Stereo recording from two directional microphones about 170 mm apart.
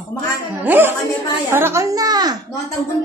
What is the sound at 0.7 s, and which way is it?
A woman's voice, 10° right (ahead or behind).